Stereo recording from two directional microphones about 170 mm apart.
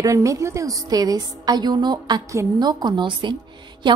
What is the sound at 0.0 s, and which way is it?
A woman's voice, 20° right (ahead or behind).